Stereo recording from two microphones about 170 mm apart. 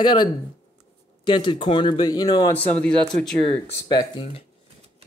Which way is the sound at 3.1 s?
40° right (ahead or behind).